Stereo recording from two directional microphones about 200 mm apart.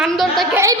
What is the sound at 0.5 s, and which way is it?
Music, 15° right (ahead or behind).